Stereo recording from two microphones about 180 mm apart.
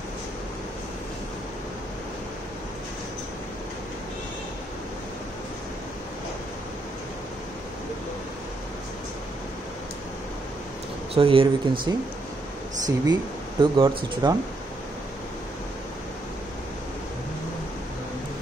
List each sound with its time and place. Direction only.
11.1 s speech: 30° right (ahead or behind)